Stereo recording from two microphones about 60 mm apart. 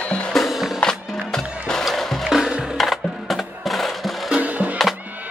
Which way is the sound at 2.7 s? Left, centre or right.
Centre.